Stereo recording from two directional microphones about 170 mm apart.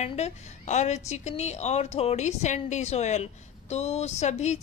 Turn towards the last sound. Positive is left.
turn(degrees=40)  # may be behind; listen again after turning